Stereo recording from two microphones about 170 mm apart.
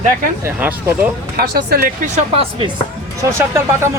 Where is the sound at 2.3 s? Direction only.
35° right (ahead or behind).